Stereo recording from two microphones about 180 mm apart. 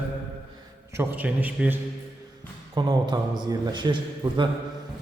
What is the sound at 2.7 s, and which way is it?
A man's voice, 25° right (ahead or behind).